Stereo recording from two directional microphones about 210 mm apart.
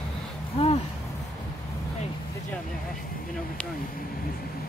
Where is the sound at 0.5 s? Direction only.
30° left (ahead or behind).